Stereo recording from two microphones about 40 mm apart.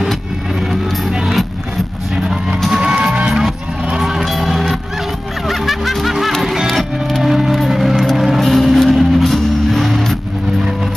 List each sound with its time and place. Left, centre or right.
2.8 s music: centre
4.0 s music: centre